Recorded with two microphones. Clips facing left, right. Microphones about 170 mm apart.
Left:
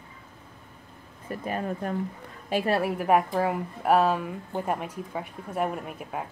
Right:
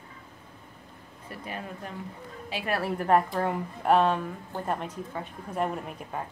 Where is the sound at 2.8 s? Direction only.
10° left (ahead or behind).